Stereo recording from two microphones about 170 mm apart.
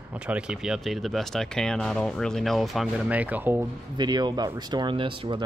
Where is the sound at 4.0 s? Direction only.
25° right (ahead or behind).